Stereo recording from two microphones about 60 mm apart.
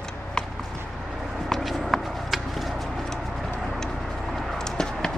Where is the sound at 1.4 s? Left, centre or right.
Centre.